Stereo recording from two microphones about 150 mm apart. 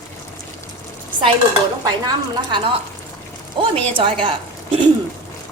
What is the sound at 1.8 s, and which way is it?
A woman's voice, 30° right (ahead or behind).